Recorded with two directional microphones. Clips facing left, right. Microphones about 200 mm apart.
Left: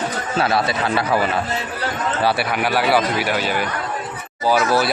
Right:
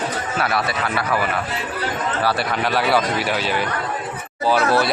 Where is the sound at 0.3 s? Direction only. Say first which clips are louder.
Left 4 dB; 25° left (ahead or behind).